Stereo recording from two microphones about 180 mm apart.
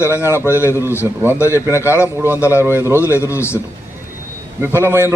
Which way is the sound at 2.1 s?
10° right (ahead or behind).